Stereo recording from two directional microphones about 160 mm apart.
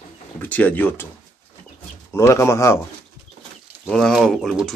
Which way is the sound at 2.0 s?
15° left (ahead or behind).